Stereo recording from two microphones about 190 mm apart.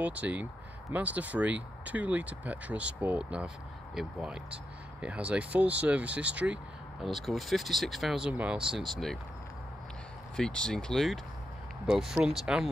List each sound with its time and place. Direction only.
0.0 s speech: 5° right (ahead or behind)
10.3 s speech: 5° left (ahead or behind)